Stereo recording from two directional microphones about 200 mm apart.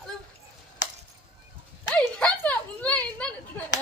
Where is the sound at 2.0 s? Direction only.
5° left (ahead or behind).